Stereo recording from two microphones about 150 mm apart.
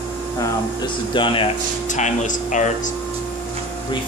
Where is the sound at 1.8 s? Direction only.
55° left (ahead or behind).